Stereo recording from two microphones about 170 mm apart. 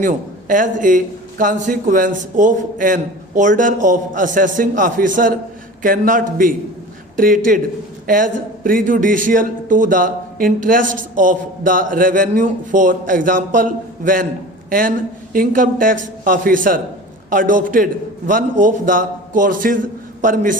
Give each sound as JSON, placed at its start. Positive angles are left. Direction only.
{"t": 0.0, "sound": "speech", "side_deg": -50}